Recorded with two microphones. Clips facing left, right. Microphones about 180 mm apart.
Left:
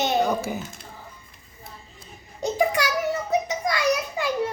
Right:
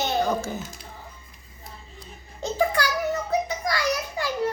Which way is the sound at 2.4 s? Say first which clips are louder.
Left 1 dB; 15° left (ahead or behind).